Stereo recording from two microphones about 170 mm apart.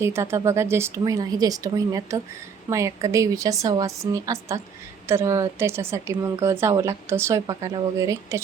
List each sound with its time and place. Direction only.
0.0 s a woman's voice: 15° right (ahead or behind)